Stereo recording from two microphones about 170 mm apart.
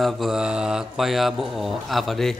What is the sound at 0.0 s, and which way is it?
Mantra, centre (ahead or behind).